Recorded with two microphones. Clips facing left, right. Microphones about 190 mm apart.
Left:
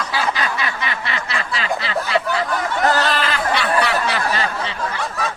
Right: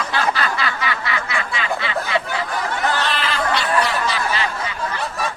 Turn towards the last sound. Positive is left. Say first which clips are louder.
# left 1 dB
turn(degrees=65)  # may be behind; listen again after turning